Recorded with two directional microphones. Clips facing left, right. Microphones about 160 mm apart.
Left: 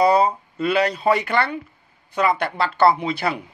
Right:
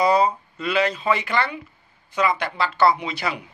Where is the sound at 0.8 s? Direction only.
35° left (ahead or behind).